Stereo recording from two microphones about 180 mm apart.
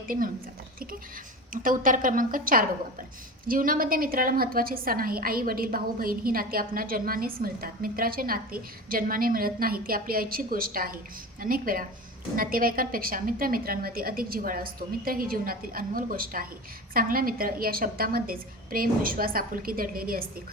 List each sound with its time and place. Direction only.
1.6 s a woman's voice: 50° right (ahead or behind)